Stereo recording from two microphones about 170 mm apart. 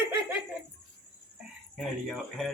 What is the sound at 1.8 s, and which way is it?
Speech, centre (ahead or behind).